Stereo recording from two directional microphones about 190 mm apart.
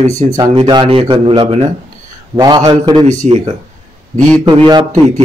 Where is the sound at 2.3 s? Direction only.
20° right (ahead or behind).